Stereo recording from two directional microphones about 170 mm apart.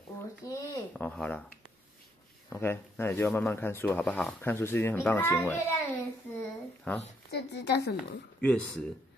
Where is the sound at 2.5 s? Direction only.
15° left (ahead or behind).